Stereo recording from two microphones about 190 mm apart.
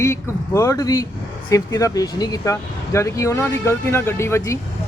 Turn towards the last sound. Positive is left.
turn(degrees=15)  # may be behind; listen again after turning